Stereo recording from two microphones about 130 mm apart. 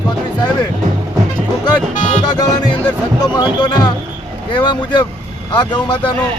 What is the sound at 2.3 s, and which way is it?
Music, 30° left (ahead or behind).